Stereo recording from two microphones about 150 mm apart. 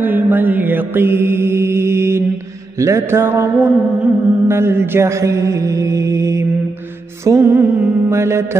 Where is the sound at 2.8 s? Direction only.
20° right (ahead or behind).